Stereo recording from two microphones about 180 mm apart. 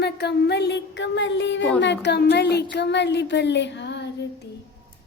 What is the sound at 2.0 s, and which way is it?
A woman's voice, 65° left (ahead or behind).